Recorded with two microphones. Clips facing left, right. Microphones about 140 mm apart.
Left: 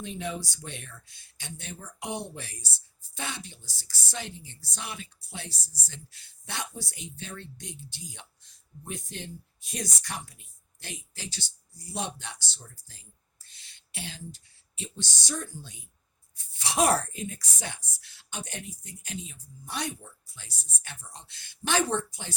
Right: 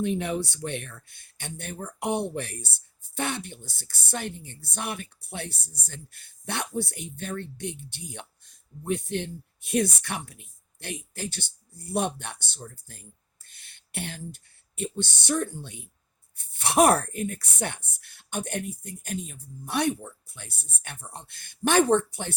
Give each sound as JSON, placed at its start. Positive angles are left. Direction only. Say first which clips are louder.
{"t": 0.0, "sound": "speech", "louder": "right 8 dB", "side_deg": -60}